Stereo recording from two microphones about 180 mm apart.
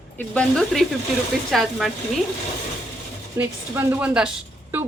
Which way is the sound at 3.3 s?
10° right (ahead or behind).